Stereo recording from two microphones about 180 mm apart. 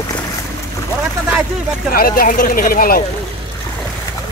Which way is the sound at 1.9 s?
55° left (ahead or behind).